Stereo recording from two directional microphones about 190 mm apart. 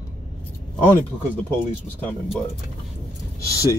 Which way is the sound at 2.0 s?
5° left (ahead or behind).